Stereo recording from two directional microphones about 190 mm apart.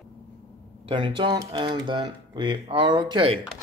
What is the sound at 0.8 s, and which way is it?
Speech, 25° right (ahead or behind).